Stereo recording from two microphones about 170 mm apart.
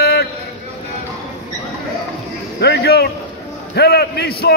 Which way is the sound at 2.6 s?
75° left (ahead or behind).